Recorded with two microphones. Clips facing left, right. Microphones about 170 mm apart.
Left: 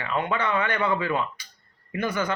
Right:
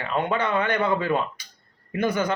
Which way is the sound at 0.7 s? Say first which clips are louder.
Right 2 dB; 40° right (ahead or behind).